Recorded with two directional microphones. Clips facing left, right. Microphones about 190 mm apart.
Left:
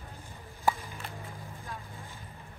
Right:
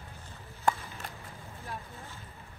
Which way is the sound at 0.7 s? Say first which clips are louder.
Even; 5° left (ahead or behind).